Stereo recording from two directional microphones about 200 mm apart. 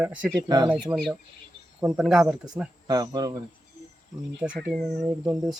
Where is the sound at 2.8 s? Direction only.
20° right (ahead or behind).